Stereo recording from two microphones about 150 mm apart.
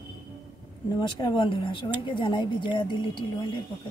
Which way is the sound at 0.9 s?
30° left (ahead or behind).